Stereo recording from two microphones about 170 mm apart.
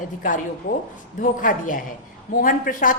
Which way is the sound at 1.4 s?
50° left (ahead or behind).